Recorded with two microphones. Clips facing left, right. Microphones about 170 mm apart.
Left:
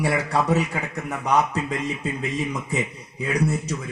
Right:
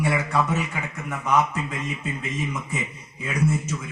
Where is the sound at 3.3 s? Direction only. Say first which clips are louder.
Left 1 dB; 35° left (ahead or behind).